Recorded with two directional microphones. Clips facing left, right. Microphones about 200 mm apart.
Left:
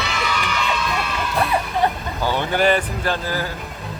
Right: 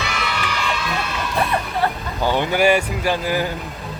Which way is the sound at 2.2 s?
15° right (ahead or behind).